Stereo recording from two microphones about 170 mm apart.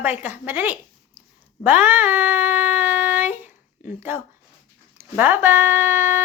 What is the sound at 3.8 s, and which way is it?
Speech, 10° right (ahead or behind).